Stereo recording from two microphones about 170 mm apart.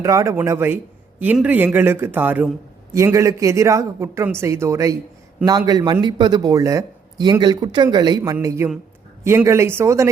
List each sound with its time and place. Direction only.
0.0 s a man's voice: 20° right (ahead or behind)